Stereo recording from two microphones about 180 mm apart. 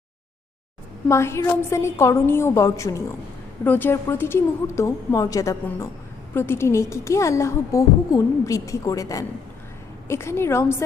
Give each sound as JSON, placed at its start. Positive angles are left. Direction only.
{"t": 1.0, "sound": "a woman's voice", "side_deg": 15}